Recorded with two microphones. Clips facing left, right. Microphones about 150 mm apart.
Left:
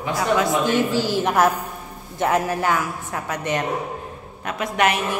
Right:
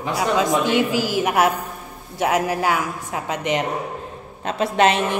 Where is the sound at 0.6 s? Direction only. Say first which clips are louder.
Even; 15° right (ahead or behind).